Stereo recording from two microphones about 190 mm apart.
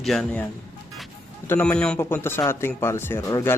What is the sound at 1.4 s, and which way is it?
A man's voice, 10° left (ahead or behind).